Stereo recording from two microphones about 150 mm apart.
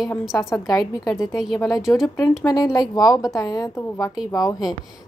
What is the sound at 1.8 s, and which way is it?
Speech, centre (ahead or behind).